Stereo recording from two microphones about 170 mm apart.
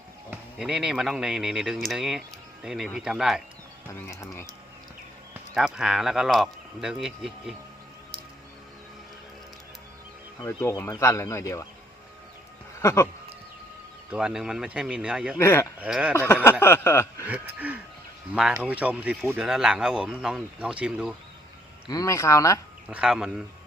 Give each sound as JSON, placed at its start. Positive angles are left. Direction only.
{"t": 0.3, "sound": "speech", "side_deg": -5}
{"t": 3.8, "sound": "speech", "side_deg": 15}
{"t": 5.5, "sound": "speech", "side_deg": -5}
{"t": 10.4, "sound": "speech", "side_deg": 20}
{"t": 12.8, "sound": "speech", "side_deg": 15}
{"t": 14.1, "sound": "speech", "side_deg": -5}
{"t": 15.4, "sound": "speech", "side_deg": 15}
{"t": 15.8, "sound": "speech", "side_deg": -5}
{"t": 16.1, "sound": "a sound", "side_deg": 15}
{"t": 17.2, "sound": "speech", "side_deg": -10}
{"t": 21.8, "sound": "speech", "side_deg": 20}
{"t": 22.9, "sound": "speech", "side_deg": -5}